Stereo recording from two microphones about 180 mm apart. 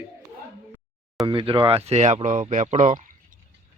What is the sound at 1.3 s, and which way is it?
A man's voice, 30° right (ahead or behind).